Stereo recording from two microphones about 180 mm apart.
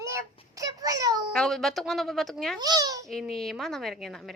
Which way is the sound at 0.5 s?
20° right (ahead or behind).